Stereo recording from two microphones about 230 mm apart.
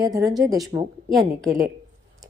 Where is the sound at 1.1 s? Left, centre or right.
Centre.